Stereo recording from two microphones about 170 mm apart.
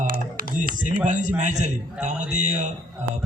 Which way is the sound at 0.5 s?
50° right (ahead or behind).